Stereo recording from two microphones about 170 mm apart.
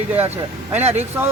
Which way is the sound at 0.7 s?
40° right (ahead or behind).